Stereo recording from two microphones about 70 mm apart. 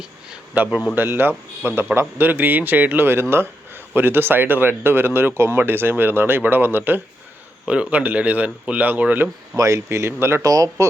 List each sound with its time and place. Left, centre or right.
0.5 s speech: right
7.6 s speech: centre
9.6 s speech: right
10.4 s speech: right